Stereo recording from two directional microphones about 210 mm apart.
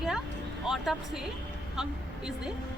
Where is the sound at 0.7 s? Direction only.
Centre (ahead or behind).